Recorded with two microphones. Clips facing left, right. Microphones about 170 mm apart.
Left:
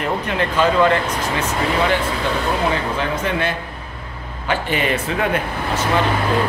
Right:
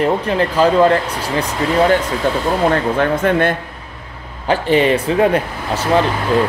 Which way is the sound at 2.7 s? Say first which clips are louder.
Right 6 dB; 55° right (ahead or behind).